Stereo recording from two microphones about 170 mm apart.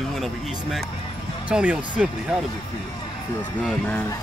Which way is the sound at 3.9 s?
10° left (ahead or behind).